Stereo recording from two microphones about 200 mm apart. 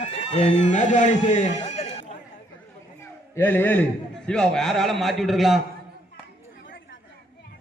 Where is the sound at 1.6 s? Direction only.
35° left (ahead or behind).